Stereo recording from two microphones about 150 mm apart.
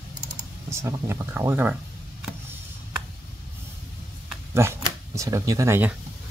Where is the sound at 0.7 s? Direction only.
20° right (ahead or behind).